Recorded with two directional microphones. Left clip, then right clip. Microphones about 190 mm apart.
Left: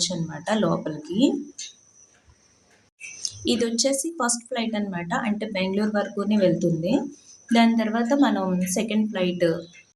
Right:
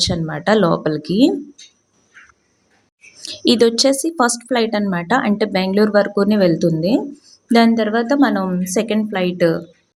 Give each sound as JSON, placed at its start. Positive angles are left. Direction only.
{"t": 0.0, "sound": "speech", "side_deg": -45}
{"t": 3.2, "sound": "a woman's voice", "side_deg": -50}